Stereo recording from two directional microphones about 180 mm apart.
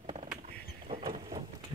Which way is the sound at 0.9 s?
30° right (ahead or behind).